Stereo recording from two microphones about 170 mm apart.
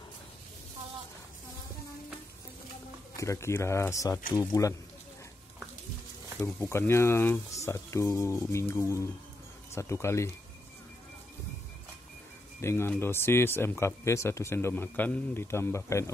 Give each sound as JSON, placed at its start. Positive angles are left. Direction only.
{"t": 3.2, "sound": "speech", "side_deg": 15}
{"t": 6.4, "sound": "speech", "side_deg": 15}
{"t": 12.6, "sound": "speech", "side_deg": 15}